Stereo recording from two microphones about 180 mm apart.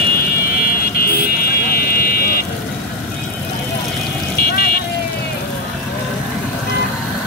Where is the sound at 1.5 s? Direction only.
55° left (ahead or behind).